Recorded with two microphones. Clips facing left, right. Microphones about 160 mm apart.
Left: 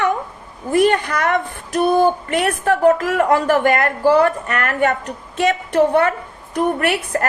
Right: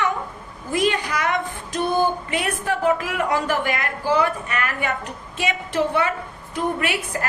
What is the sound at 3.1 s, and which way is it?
A woman's voice, 60° left (ahead or behind).